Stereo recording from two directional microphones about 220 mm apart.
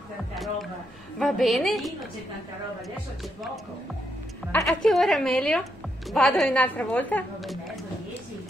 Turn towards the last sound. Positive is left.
turn(degrees=5)  # may be behind; listen again after turning